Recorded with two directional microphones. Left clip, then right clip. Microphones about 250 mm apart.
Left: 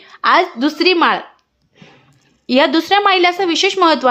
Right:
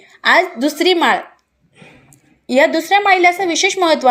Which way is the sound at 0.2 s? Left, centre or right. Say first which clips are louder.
Even; centre.